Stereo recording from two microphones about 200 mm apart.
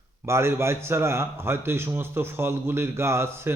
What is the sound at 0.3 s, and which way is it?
A man's voice, 15° right (ahead or behind).